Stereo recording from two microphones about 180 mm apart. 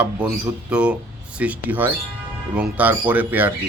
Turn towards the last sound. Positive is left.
turn(degrees=-10)  # may be behind; listen again after turning